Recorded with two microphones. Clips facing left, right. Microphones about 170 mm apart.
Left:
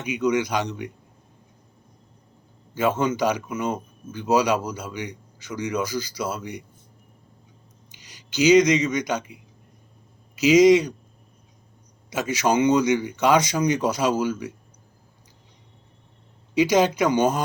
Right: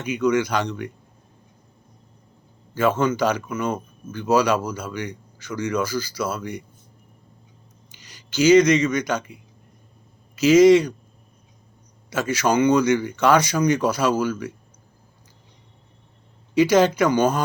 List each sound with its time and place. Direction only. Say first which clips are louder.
0.0 s a man's voice: right 2 dB; 15° left (ahead or behind)
2.7 s a man's voice: right 2 dB; 15° left (ahead or behind)
7.9 s a man's voice: right 1 dB; 15° left (ahead or behind)
12.1 s a man's voice: right 1 dB; 15° left (ahead or behind)
16.6 s a man's voice: right 2 dB; 15° left (ahead or behind)